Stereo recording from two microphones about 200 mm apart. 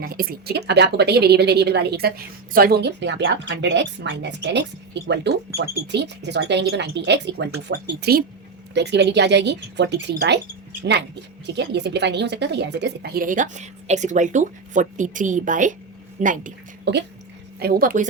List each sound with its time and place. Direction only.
0.0 s a woman's voice: 50° right (ahead or behind)
16.9 s a woman's voice: 60° right (ahead or behind)
17.6 s a woman's voice: 50° right (ahead or behind)